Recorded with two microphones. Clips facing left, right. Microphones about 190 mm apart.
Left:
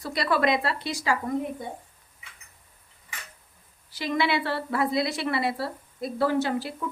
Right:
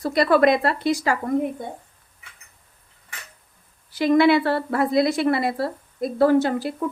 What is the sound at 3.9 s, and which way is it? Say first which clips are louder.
Speech: right 10 dB; 50° right (ahead or behind).